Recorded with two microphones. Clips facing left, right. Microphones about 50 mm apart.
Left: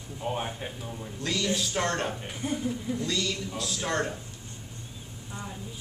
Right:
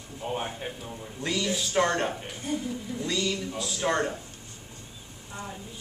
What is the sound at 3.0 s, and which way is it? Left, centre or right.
A man's voice, centre.